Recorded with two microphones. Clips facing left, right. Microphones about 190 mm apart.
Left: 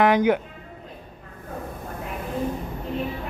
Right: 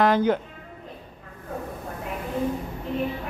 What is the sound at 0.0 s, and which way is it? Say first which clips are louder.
Speech: left 2 dB; 15° left (ahead or behind).